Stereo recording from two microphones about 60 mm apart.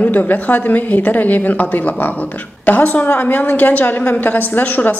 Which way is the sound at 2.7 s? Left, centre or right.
Left.